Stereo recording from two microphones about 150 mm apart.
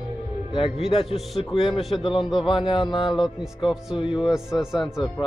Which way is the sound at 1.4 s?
35° left (ahead or behind).